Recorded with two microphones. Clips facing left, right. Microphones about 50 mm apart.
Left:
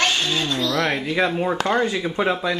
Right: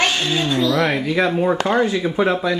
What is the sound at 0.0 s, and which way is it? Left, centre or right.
Speech, centre.